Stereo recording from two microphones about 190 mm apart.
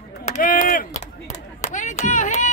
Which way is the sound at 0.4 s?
50° left (ahead or behind).